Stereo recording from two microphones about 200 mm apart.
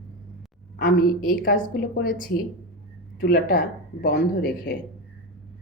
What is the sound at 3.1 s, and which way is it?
A woman's voice, 50° left (ahead or behind).